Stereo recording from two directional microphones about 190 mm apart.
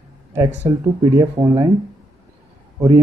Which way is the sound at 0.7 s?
20° right (ahead or behind).